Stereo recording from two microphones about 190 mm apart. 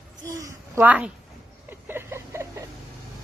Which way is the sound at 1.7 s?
10° right (ahead or behind).